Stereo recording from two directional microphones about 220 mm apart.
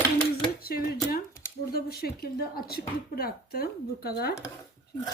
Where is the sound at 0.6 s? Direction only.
45° left (ahead or behind).